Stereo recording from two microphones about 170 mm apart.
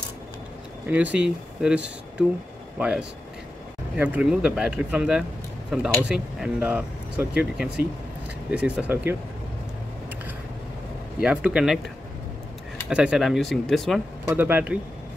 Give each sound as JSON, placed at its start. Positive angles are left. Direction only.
{"t": 0.8, "sound": "speech", "side_deg": -10}
{"t": 11.1, "sound": "speech", "side_deg": -5}
{"t": 12.9, "sound": "speech", "side_deg": -5}
{"t": 14.2, "sound": "speech", "side_deg": -10}